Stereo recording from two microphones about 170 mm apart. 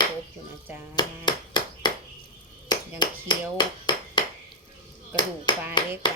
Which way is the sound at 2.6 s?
25° left (ahead or behind).